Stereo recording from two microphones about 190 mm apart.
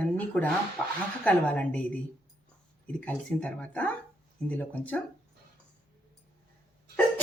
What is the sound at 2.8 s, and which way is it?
Speech, 5° left (ahead or behind).